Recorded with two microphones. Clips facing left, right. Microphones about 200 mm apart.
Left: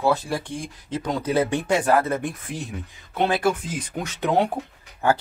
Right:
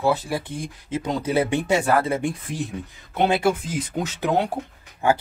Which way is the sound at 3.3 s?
5° right (ahead or behind).